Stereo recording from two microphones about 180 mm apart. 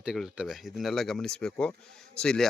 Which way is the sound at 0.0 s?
5° right (ahead or behind).